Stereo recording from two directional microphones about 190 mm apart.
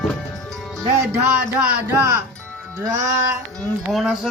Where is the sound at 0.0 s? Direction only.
Centre (ahead or behind).